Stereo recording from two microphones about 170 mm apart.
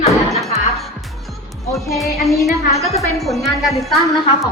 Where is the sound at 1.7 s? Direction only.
Centre (ahead or behind).